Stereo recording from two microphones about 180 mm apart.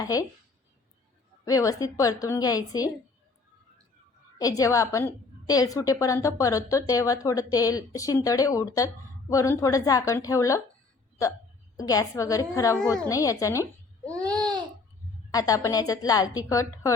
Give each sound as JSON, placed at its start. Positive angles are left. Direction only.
{"t": 0.0, "sound": "a woman's voice", "side_deg": 20}
{"t": 1.5, "sound": "a woman's voice", "side_deg": 20}
{"t": 4.4, "sound": "a woman's voice", "side_deg": 20}
{"t": 11.8, "sound": "a woman's voice", "side_deg": 20}
{"t": 14.3, "sound": "babbling", "side_deg": 5}
{"t": 15.3, "sound": "a woman's voice", "side_deg": 20}